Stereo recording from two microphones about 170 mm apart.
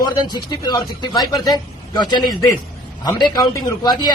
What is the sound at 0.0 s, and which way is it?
A man's voice, 25° left (ahead or behind).